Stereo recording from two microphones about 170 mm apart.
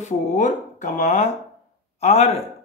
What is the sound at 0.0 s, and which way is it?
Speech, 45° left (ahead or behind).